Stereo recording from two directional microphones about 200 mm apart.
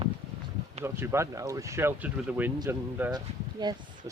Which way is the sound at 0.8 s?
15° right (ahead or behind).